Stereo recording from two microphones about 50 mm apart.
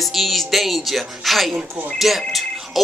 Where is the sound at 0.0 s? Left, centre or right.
Centre.